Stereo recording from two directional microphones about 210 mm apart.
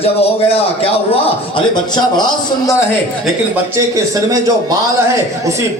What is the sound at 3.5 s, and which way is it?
Speech, 15° right (ahead or behind).